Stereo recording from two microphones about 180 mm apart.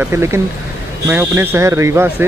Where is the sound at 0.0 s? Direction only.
15° right (ahead or behind).